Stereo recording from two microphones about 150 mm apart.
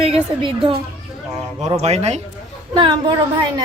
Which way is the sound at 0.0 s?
40° right (ahead or behind).